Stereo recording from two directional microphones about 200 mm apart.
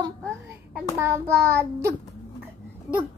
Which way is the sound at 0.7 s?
15° right (ahead or behind).